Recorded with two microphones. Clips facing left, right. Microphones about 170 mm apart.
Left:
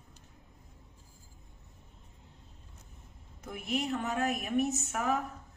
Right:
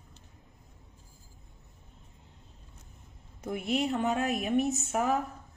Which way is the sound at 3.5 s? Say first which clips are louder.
Right 4 dB; 30° right (ahead or behind).